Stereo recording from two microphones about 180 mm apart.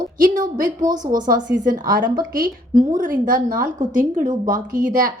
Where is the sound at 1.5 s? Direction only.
50° right (ahead or behind).